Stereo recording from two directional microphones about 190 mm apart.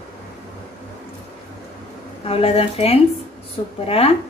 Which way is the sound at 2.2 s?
30° left (ahead or behind).